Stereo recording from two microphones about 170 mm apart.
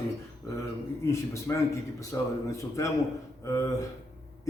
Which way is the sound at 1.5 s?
15° left (ahead or behind).